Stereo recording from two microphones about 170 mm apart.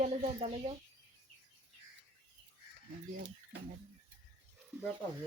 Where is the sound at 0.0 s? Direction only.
40° right (ahead or behind).